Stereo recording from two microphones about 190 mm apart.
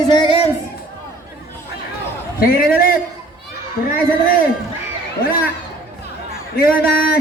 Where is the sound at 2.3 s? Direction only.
50° left (ahead or behind).